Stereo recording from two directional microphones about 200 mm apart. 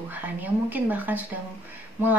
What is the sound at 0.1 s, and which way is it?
Speech, 10° right (ahead or behind).